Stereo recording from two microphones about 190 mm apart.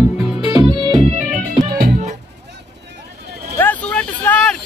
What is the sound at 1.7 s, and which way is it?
Music, 50° right (ahead or behind).